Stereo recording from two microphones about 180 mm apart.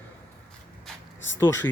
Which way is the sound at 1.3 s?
15° left (ahead or behind).